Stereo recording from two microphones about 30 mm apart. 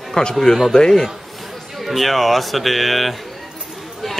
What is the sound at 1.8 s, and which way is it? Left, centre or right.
A man's voice, centre.